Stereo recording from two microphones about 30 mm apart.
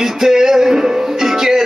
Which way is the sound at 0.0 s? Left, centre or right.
Centre.